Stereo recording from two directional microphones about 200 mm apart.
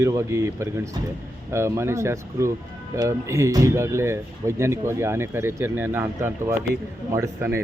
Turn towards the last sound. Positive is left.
turn(degrees=-15)  # may be behind; listen again after turning